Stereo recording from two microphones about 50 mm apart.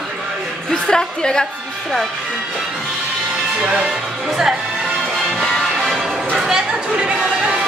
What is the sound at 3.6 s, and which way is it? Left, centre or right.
Speech, right.